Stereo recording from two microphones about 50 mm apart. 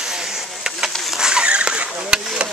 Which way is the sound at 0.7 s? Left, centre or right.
Centre.